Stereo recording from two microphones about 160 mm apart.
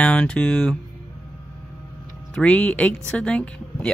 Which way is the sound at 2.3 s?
5° left (ahead or behind).